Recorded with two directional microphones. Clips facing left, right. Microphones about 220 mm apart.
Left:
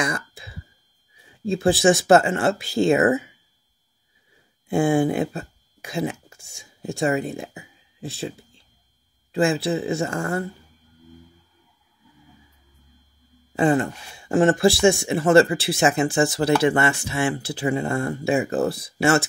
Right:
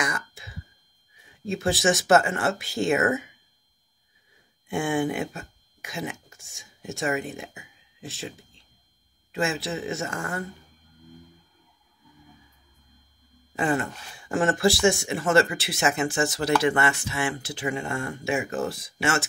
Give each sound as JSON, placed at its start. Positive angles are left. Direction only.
{"t": 0.0, "sound": "throat clearing", "side_deg": 30}
{"t": 1.4, "sound": "speech", "side_deg": 30}
{"t": 4.6, "sound": "speech", "side_deg": 35}
{"t": 13.6, "sound": "speech", "side_deg": 30}